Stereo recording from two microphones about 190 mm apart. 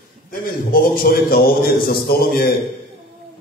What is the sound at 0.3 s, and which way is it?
A man's voice, 50° left (ahead or behind).